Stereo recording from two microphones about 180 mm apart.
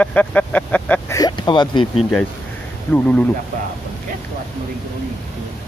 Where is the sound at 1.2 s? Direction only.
25° left (ahead or behind).